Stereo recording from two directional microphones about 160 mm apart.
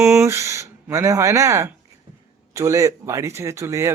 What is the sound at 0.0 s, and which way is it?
Speech, 15° right (ahead or behind).